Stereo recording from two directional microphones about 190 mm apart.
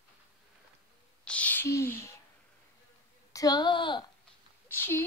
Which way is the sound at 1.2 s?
5° left (ahead or behind).